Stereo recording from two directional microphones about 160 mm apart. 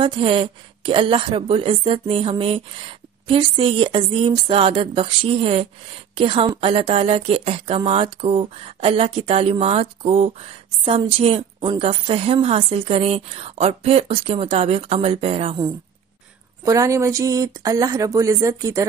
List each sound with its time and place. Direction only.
0.0 s a woman's voice: 35° right (ahead or behind)
16.6 s a woman's voice: 20° right (ahead or behind)